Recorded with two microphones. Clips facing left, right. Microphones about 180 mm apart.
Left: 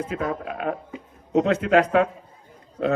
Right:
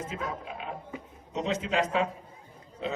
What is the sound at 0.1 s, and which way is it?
A man's voice, 60° left (ahead or behind).